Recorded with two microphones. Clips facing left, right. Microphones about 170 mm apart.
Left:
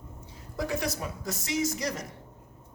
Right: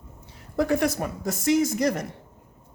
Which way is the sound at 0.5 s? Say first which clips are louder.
Right 8 dB; 55° right (ahead or behind).